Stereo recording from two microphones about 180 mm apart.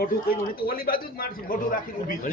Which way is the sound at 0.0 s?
55° left (ahead or behind).